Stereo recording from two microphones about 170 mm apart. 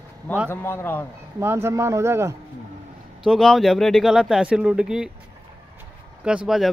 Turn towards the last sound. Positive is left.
turn(degrees=-5)  # may be behind; listen again after turning